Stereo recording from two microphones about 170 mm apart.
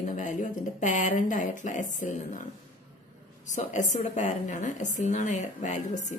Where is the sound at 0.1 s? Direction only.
50° left (ahead or behind).